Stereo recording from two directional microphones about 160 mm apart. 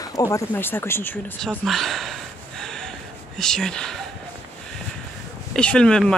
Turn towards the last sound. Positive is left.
turn(degrees=5)  # may be behind; listen again after turning